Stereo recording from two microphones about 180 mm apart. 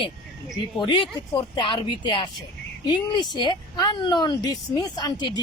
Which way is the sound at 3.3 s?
25° left (ahead or behind).